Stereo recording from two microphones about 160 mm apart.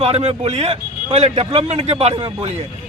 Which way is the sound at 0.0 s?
40° right (ahead or behind).